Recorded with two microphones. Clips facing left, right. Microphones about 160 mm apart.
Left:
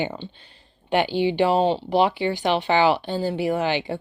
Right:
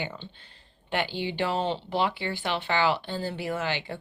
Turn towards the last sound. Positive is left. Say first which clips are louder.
# left 7 dB
turn(degrees=15)  # may be behind; listen again after turning